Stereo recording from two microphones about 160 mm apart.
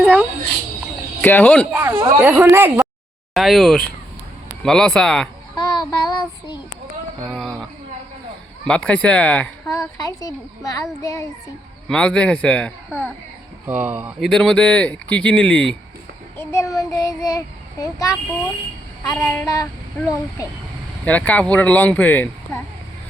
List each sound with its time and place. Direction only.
0.0 s a sound: 5° right (ahead or behind)
1.2 s child singing: 10° left (ahead or behind)
1.7 s speech: 15° right (ahead or behind)
3.3 s speech: centre (ahead or behind)
5.5 s child singing: 30° left (ahead or behind)
7.2 s a sound: 5° left (ahead or behind)
8.6 s child singing: 5° left (ahead or behind)
10.0 s a child's voice: 20° left (ahead or behind)
11.9 s speech: 5° left (ahead or behind)
13.7 s speech: 10° right (ahead or behind)
14.2 s speech: centre (ahead or behind)
16.4 s a child's voice: 20° left (ahead or behind)
19.2 s child singing: 15° left (ahead or behind)
21.0 s child singing: 10° left (ahead or behind)